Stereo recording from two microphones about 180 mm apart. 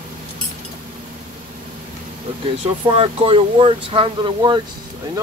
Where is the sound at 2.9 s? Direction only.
30° right (ahead or behind).